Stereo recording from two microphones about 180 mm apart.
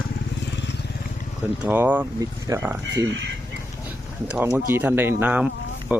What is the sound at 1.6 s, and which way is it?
Speech, 10° right (ahead or behind).